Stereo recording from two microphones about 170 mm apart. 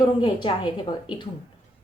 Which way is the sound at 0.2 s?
25° left (ahead or behind).